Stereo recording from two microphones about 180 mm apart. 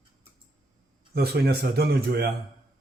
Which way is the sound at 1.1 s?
60° right (ahead or behind).